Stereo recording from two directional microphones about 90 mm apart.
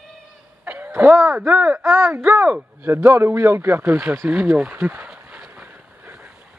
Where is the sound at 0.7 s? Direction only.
20° right (ahead or behind).